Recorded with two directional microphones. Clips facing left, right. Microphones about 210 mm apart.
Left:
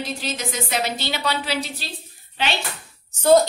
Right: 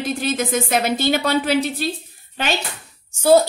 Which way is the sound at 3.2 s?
10° right (ahead or behind).